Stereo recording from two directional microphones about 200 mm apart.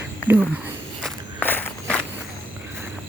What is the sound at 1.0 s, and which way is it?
Walk, 10° left (ahead or behind).